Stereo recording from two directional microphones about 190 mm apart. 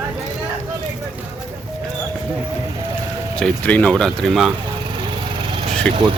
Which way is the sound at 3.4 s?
5° left (ahead or behind).